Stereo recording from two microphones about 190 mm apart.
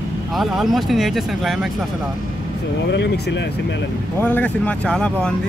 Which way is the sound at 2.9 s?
65° left (ahead or behind).